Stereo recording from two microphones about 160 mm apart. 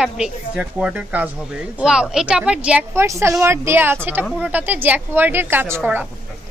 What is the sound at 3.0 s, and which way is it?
A woman's voice, 20° right (ahead or behind).